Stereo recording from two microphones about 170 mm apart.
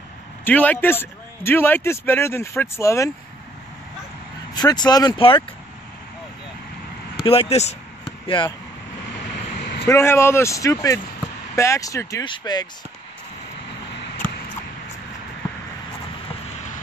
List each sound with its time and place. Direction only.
0.5 s a man's voice: 10° left (ahead or behind)
4.6 s speech: 25° left (ahead or behind)
7.2 s speech: 35° left (ahead or behind)
9.1 s vehicle: 85° left
9.8 s a man's voice: 15° left (ahead or behind)